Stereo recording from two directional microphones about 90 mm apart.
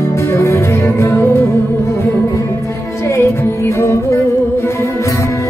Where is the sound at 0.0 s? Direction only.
30° left (ahead or behind).